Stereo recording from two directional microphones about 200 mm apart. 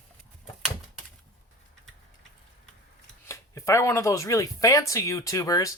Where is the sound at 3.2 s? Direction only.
15° left (ahead or behind).